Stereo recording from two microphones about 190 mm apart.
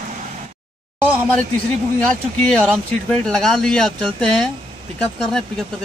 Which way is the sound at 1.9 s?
5° left (ahead or behind).